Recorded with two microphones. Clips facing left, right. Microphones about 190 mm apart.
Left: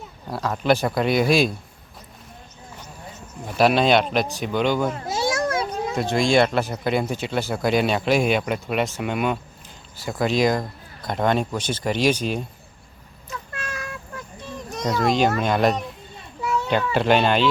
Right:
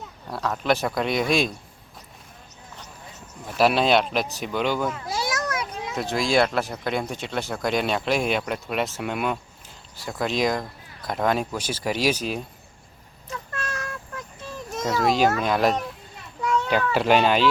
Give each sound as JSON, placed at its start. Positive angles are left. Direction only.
{"t": 0.3, "sound": "speech", "side_deg": 0}
{"t": 3.6, "sound": "speech", "side_deg": 0}
{"t": 5.0, "sound": "a sound", "side_deg": 25}
{"t": 6.0, "sound": "speech", "side_deg": 0}
{"t": 13.2, "sound": "vehicle", "side_deg": 10}
{"t": 14.8, "sound": "speech", "side_deg": 0}
{"t": 16.4, "sound": "children playing", "side_deg": 5}
{"t": 16.9, "sound": "speech", "side_deg": -5}